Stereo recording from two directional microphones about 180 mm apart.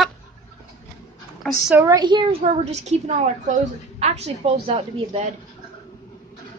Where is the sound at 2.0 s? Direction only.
25° right (ahead or behind).